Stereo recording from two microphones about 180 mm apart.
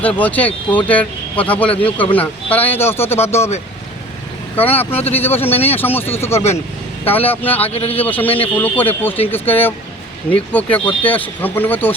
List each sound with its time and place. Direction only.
0.0 s speech: 10° left (ahead or behind)
4.5 s speech: 10° left (ahead or behind)
5.5 s speech: 35° left (ahead or behind)
5.7 s speech: 10° left (ahead or behind)
7.7 s speech: 35° left (ahead or behind)
7.9 s speech: 10° left (ahead or behind)